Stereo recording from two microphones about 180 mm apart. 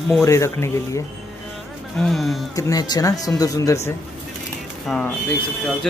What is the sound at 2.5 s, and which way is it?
Speech, 20° left (ahead or behind).